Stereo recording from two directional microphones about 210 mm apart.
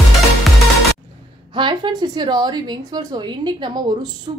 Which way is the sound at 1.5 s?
25° right (ahead or behind).